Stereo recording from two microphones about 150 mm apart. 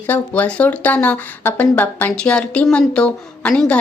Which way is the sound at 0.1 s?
10° left (ahead or behind).